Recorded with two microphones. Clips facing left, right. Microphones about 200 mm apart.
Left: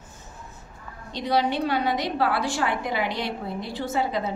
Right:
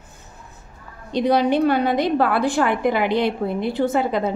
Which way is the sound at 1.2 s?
55° right (ahead or behind).